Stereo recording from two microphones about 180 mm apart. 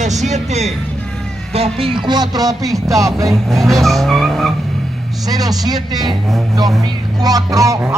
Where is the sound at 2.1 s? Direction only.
20° right (ahead or behind).